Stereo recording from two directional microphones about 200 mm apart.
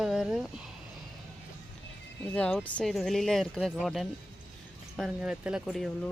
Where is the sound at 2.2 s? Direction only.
5° left (ahead or behind).